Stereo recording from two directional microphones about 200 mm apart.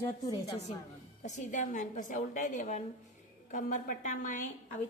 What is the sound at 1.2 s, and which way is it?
A woman's voice, 35° left (ahead or behind).